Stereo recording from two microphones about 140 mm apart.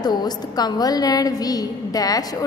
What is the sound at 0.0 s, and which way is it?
A woman's voice, 30° left (ahead or behind).